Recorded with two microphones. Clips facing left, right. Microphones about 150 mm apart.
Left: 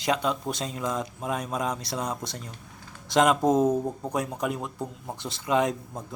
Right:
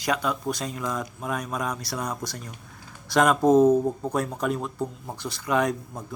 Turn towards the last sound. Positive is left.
turn(degrees=25)  # may be behind; listen again after turning